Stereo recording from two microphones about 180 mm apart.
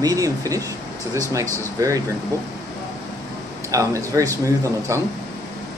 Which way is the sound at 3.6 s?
20° right (ahead or behind).